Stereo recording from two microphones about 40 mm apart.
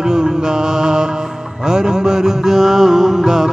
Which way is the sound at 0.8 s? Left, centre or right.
Centre.